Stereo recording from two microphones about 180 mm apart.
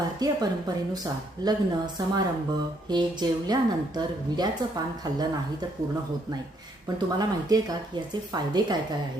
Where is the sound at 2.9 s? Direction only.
25° right (ahead or behind).